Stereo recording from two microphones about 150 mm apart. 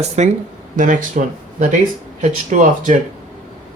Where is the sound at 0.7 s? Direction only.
60° right (ahead or behind).